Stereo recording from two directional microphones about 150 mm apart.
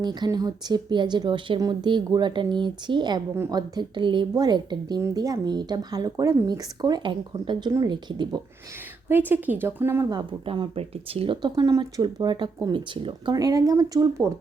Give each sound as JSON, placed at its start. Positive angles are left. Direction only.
{"t": 0.0, "sound": "speech", "side_deg": -30}
{"t": 3.3, "sound": "a woman's voice", "side_deg": -15}
{"t": 3.8, "sound": "speech", "side_deg": -30}
{"t": 9.0, "sound": "a woman's voice", "side_deg": -15}
{"t": 10.1, "sound": "speech", "side_deg": -30}
{"t": 11.5, "sound": "speech", "side_deg": -25}
{"t": 13.3, "sound": "speech", "side_deg": -25}